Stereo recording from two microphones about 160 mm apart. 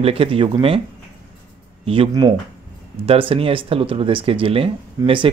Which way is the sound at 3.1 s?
35° right (ahead or behind).